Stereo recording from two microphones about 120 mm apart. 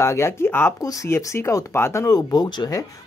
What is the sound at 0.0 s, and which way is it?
Speech, 25° left (ahead or behind).